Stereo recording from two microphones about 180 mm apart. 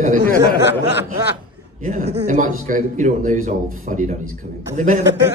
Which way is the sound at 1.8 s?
45° right (ahead or behind).